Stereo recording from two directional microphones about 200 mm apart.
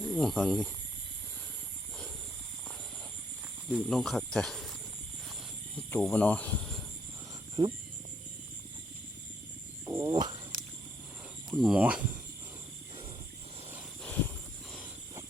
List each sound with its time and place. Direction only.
0.0 s speech: centre (ahead or behind)
3.7 s speech: centre (ahead or behind)
5.9 s speech: 10° left (ahead or behind)
7.6 s speech: 20° right (ahead or behind)
9.8 s speech: 20° right (ahead or behind)
11.5 s speech: 5° right (ahead or behind)